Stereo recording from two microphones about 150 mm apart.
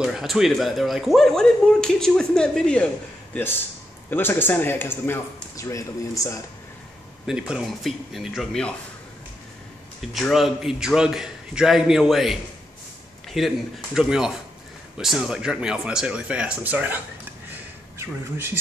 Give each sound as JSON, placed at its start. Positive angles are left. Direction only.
{"t": 0.0, "sound": "speech", "side_deg": -5}
{"t": 4.1, "sound": "speech", "side_deg": 15}
{"t": 7.2, "sound": "speech", "side_deg": -5}
{"t": 10.1, "sound": "speech", "side_deg": 0}